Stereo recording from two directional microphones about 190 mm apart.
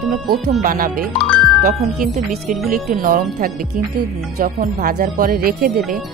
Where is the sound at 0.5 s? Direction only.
45° right (ahead or behind).